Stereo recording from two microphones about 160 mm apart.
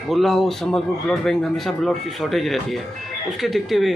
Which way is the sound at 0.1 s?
Centre (ahead or behind).